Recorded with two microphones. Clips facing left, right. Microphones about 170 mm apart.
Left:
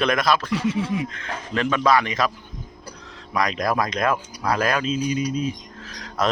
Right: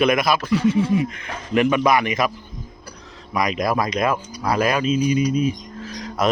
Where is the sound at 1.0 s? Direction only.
10° right (ahead or behind).